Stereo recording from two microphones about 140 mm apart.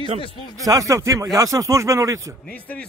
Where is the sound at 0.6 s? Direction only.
25° right (ahead or behind).